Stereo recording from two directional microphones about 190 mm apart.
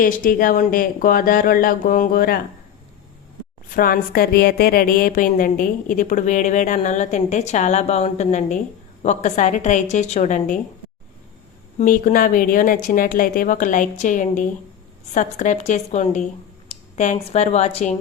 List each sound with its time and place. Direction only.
0.0 s a woman's voice: 50° left (ahead or behind)
3.7 s a woman's voice: 50° left (ahead or behind)
11.8 s a woman's voice: 45° left (ahead or behind)